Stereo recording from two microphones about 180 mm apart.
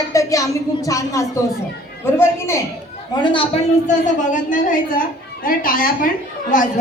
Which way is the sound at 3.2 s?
30° left (ahead or behind).